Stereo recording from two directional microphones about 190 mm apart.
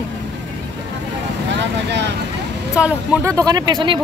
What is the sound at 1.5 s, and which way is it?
Speech, 65° right (ahead or behind).